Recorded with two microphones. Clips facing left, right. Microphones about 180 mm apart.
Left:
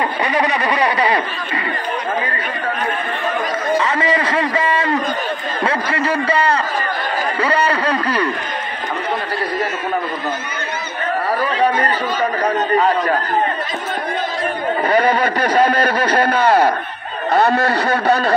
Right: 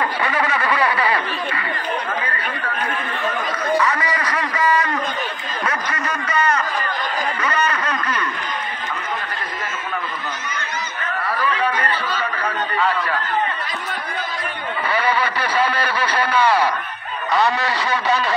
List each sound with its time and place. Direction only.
0.2 s a man's voice: 20° left (ahead or behind)
3.7 s a man's voice: 25° left (ahead or behind)
5.6 s a sound: 30° left (ahead or behind)
11.2 s speech: 35° left (ahead or behind)
14.9 s a man's voice: 45° left (ahead or behind)